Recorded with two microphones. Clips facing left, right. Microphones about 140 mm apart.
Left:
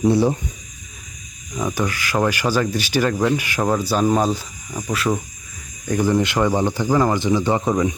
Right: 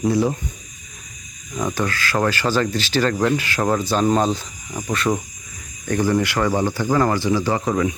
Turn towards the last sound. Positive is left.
turn(degrees=20)  # may be behind; listen again after turning